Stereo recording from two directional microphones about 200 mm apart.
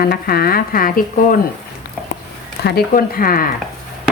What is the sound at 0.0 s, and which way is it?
Speech, 50° left (ahead or behind).